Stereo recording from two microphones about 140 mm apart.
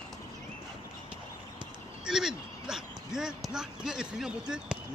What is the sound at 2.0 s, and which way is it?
Speech, 5° right (ahead or behind).